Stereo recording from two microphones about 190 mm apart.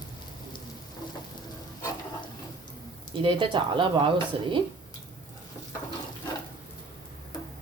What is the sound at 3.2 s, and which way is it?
Speech, 25° right (ahead or behind).